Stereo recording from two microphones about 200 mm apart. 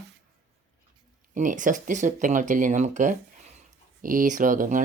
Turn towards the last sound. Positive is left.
turn(degrees=-40)  # may be behind; listen again after turning